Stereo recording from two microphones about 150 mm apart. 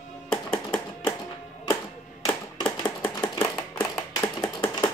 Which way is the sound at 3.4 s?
15° left (ahead or behind).